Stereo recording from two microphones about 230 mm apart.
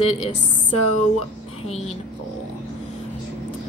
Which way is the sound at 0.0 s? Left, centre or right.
Left.